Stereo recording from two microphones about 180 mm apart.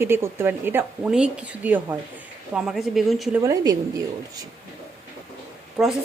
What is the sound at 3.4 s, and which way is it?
Speech, 20° right (ahead or behind).